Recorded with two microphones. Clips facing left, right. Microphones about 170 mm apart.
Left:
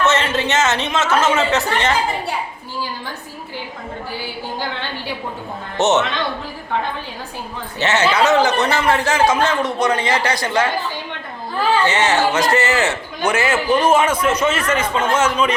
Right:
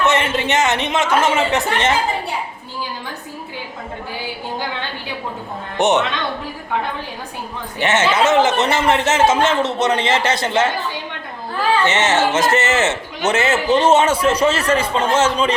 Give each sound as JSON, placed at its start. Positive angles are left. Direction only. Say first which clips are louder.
{"t": 0.0, "sound": "a sound", "louder": "even", "side_deg": -15}
{"t": 5.7, "sound": "speech", "louder": "even", "side_deg": -15}
{"t": 7.8, "sound": "a man's voice", "louder": "even", "side_deg": -20}
{"t": 11.9, "sound": "a man's voice", "louder": "even", "side_deg": -20}